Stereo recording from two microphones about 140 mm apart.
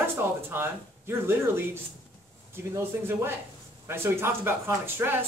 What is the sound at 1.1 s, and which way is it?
Speech, 15° right (ahead or behind).